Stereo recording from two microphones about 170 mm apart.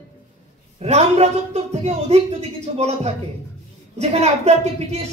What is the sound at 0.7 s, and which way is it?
Speech, 40° right (ahead or behind).